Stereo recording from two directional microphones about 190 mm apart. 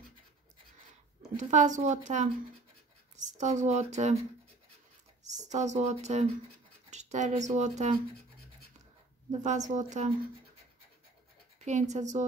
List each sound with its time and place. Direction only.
1.3 s speech: 40° right (ahead or behind)
3.3 s speech: 40° right (ahead or behind)
5.3 s speech: 40° right (ahead or behind)
9.3 s speech: 40° right (ahead or behind)
11.6 s speech: 40° right (ahead or behind)